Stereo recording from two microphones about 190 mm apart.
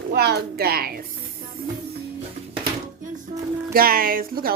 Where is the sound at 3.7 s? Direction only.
50° right (ahead or behind).